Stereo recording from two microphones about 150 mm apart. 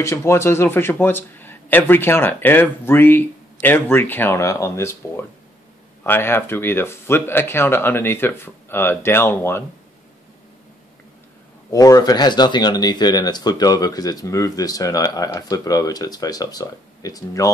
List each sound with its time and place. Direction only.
0.0 s speech: 15° left (ahead or behind)
11.7 s speech: 25° left (ahead or behind)